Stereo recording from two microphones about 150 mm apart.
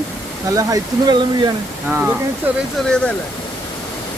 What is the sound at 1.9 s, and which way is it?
Speech, 15° right (ahead or behind).